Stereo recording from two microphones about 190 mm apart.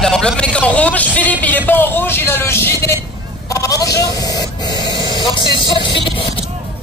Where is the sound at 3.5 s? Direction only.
20° left (ahead or behind).